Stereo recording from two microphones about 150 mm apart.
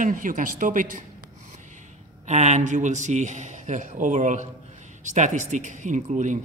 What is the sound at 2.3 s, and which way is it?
A man's voice, 50° right (ahead or behind).